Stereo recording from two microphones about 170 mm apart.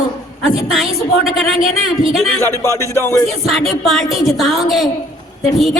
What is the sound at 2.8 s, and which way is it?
Music, 15° left (ahead or behind).